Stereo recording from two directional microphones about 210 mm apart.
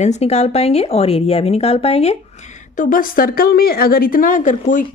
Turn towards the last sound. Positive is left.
turn(degrees=40)  # may be behind; listen again after turning